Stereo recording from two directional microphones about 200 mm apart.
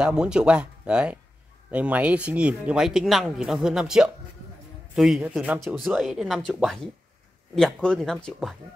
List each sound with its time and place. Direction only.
0.0 s speech: 5° right (ahead or behind)